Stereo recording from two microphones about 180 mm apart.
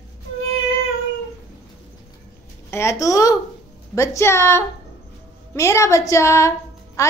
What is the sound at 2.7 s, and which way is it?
A woman's voice, 15° left (ahead or behind).